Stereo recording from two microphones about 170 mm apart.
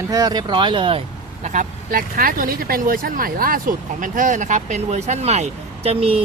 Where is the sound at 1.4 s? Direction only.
45° right (ahead or behind).